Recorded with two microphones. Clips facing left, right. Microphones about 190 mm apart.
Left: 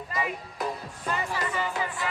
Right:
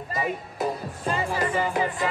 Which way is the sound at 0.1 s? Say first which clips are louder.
Right 4 dB; 25° right (ahead or behind).